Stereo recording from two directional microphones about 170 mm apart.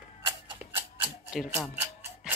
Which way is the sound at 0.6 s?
10° right (ahead or behind).